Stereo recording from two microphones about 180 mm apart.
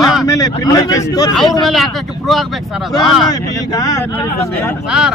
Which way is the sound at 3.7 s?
20° left (ahead or behind).